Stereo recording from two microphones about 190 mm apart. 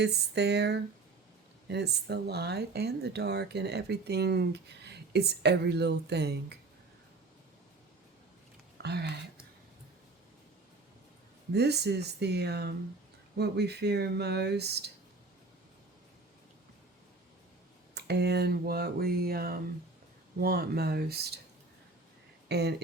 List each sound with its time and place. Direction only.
0.0 s speech: 60° right (ahead or behind)
8.8 s speech: 60° right (ahead or behind)
11.5 s speech: 60° right (ahead or behind)
17.9 s a sound: 60° right (ahead or behind)
20.4 s speech: 55° right (ahead or behind)
22.4 s speech: 60° right (ahead or behind)